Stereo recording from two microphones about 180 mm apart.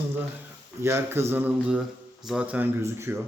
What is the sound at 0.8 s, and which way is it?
A man's voice, 15° right (ahead or behind).